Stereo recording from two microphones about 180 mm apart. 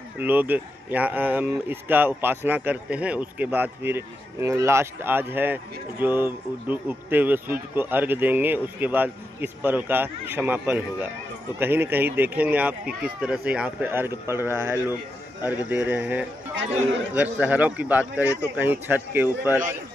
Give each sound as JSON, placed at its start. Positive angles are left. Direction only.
{"t": 0.2, "sound": "speech", "side_deg": -10}